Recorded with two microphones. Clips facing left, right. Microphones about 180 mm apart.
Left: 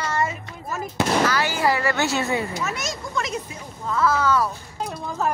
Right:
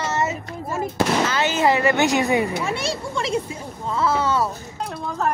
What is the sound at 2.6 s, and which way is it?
Speech, 30° right (ahead or behind).